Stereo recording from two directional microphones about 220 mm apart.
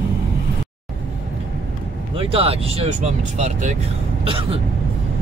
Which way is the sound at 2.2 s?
25° right (ahead or behind).